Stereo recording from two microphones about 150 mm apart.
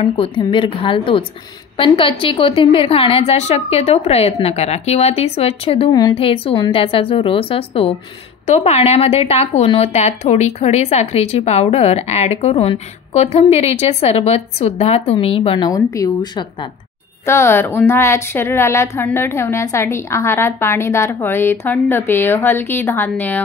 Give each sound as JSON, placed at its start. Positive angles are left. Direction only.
{"t": 0.0, "sound": "a woman's voice", "side_deg": 40}
{"t": 17.3, "sound": "a woman's voice", "side_deg": 15}